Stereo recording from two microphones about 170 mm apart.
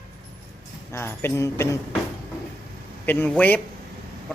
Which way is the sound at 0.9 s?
15° left (ahead or behind).